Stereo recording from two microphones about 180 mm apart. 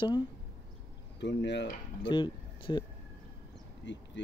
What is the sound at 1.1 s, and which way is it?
Speech, 75° left (ahead or behind).